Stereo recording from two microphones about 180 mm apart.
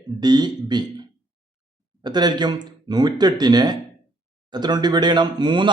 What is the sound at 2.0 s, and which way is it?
A man's voice, 25° right (ahead or behind).